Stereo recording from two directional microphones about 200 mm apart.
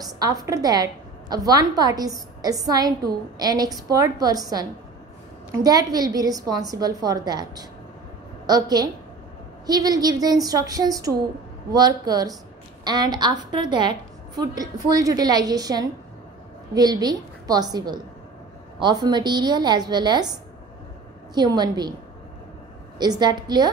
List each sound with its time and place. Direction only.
0.0 s a woman's voice: 20° right (ahead or behind)
21.4 s a woman's voice: 20° right (ahead or behind)
22.9 s a woman's voice: 20° right (ahead or behind)